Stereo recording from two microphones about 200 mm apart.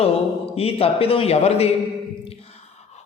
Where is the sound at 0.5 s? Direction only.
30° left (ahead or behind).